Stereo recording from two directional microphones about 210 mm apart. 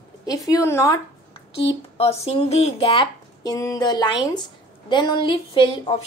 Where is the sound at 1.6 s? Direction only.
30° left (ahead or behind).